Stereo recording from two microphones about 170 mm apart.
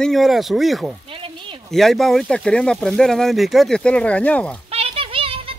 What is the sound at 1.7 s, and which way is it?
Speech, centre (ahead or behind).